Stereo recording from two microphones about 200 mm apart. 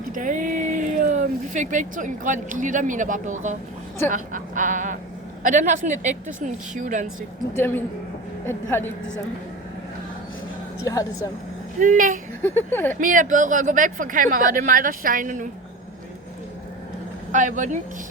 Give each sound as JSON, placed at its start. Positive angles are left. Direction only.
{"t": 0.1, "sound": "speech", "side_deg": -40}
{"t": 7.5, "sound": "a woman's voice", "side_deg": 10}
{"t": 11.8, "sound": "speech", "side_deg": -40}
{"t": 12.4, "sound": "a woman's voice", "side_deg": 10}
{"t": 13.0, "sound": "speech", "side_deg": -40}
{"t": 17.3, "sound": "speech", "side_deg": -40}